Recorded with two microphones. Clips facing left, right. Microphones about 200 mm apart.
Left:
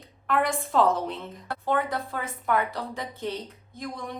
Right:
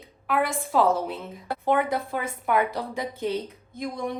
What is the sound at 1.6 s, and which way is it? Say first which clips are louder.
A woman's voice: right 3 dB; 15° right (ahead or behind).